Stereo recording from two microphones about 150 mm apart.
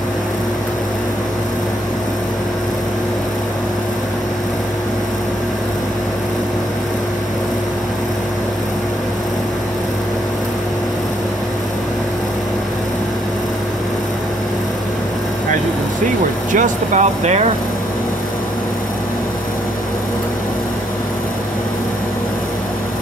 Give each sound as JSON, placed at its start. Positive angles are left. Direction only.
{"t": 16.5, "sound": "speech", "side_deg": -55}